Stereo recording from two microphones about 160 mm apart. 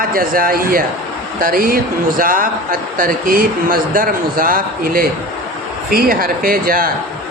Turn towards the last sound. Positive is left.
turn(degrees=-65)  # may be behind; listen again after turning